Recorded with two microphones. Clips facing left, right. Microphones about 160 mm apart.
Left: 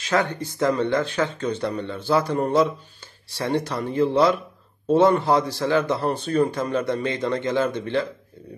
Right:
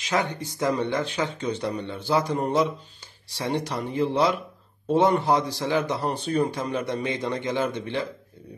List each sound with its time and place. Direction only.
0.0 s a man's voice: 15° right (ahead or behind)